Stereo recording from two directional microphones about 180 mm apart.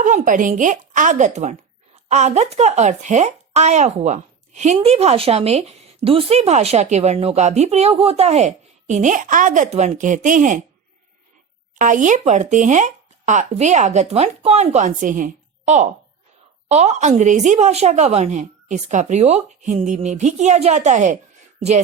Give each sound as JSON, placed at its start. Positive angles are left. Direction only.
{"t": 0.0, "sound": "speech", "side_deg": -45}
{"t": 11.8, "sound": "speech", "side_deg": -45}